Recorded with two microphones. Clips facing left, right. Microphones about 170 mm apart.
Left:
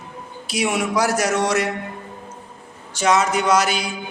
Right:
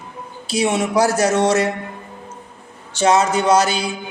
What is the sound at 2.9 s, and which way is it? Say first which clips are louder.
Speech: right 3 dB; 30° right (ahead or behind).